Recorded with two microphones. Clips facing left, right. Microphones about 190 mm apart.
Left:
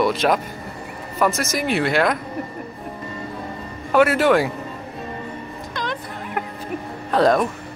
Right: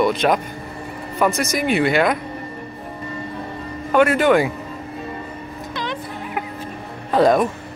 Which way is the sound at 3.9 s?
5° left (ahead or behind).